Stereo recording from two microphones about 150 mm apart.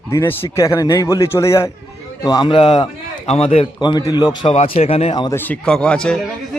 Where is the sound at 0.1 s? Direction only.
15° left (ahead or behind).